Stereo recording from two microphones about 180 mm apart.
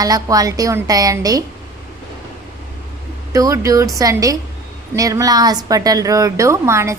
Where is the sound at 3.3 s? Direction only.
15° right (ahead or behind).